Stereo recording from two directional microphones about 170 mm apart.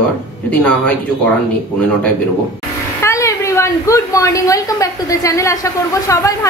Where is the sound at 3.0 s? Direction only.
20° left (ahead or behind).